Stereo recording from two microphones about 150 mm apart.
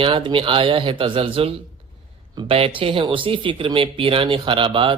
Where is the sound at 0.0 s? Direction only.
35° right (ahead or behind).